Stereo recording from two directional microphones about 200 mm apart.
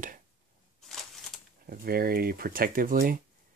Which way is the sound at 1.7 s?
50° right (ahead or behind).